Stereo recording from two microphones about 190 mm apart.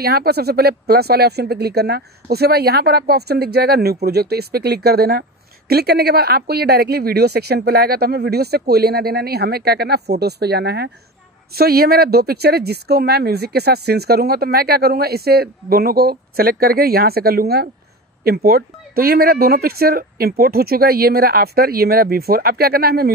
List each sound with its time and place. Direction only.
0.0 s speech: 55° right (ahead or behind)